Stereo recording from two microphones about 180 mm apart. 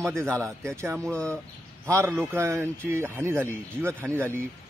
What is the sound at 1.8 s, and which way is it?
A man's voice, 15° right (ahead or behind).